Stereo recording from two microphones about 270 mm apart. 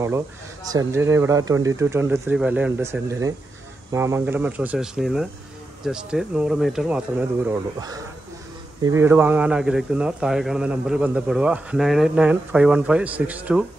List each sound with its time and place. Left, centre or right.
0.7 s a man's voice: centre